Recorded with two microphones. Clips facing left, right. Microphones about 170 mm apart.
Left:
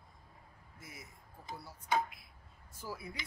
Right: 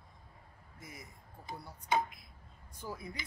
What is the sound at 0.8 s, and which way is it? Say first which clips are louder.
Speech: right 2 dB; 5° left (ahead or behind).